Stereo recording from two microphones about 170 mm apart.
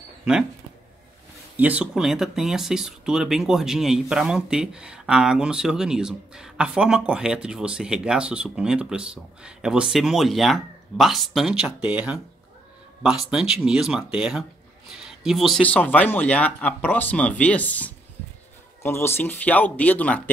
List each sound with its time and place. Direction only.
0.2 s speech: 5° right (ahead or behind)
1.6 s speech: 10° right (ahead or behind); by 20.2 s 10° left (ahead or behind)